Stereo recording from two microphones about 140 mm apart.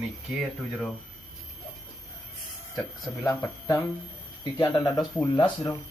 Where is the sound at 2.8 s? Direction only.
20° left (ahead or behind).